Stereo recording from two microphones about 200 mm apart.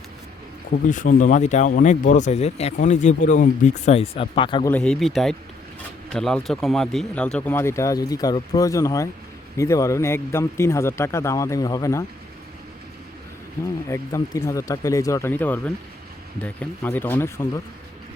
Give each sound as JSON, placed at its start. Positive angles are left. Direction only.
{"t": 0.9, "sound": "speech", "side_deg": 40}
{"t": 4.7, "sound": "speech", "side_deg": 5}
{"t": 13.8, "sound": "speech", "side_deg": 15}